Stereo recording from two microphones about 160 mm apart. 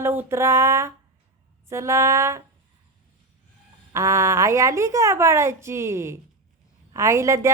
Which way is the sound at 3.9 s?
20° right (ahead or behind).